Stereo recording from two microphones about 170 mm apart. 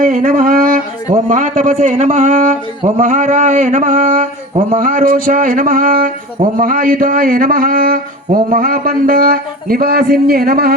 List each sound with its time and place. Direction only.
0.0 s a man's voice: 55° right (ahead or behind)